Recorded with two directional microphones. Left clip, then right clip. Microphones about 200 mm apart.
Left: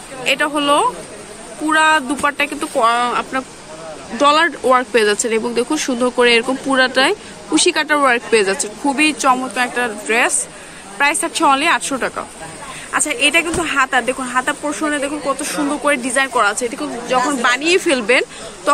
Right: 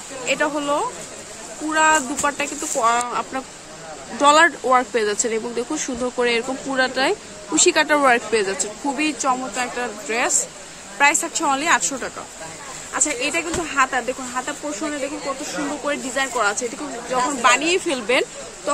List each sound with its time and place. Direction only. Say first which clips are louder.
0.3 s speech: left 6 dB; 5° left (ahead or behind)